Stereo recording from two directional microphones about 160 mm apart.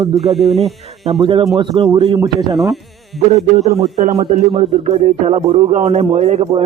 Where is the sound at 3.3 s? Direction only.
40° right (ahead or behind).